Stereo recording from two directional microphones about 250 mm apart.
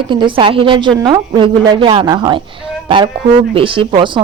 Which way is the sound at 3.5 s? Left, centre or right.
Right.